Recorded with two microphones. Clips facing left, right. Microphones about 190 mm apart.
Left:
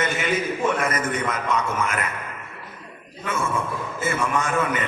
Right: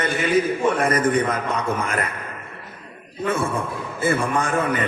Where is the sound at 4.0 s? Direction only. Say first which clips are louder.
Right 4 dB; 35° right (ahead or behind).